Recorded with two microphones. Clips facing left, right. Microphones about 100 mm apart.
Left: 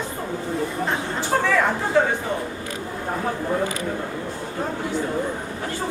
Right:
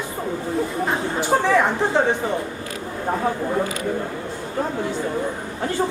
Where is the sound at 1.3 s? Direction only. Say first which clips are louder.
Right 2 dB; 20° right (ahead or behind).